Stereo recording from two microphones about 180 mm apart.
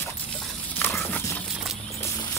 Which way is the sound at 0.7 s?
10° left (ahead or behind).